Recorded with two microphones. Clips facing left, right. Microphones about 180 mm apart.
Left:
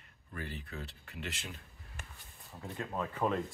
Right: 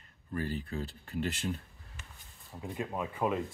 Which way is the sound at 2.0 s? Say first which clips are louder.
Left 3 dB; 50° left (ahead or behind).